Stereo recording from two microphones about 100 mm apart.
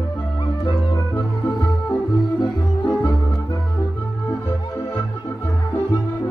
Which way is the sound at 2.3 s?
50° left (ahead or behind).